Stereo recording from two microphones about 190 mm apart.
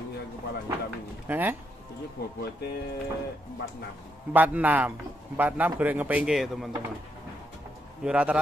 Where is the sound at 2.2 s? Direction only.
55° left (ahead or behind).